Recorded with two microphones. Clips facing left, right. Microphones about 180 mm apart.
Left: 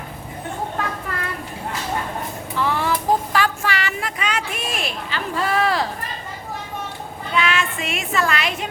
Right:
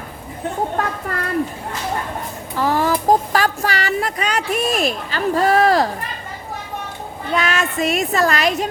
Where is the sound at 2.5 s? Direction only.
40° right (ahead or behind).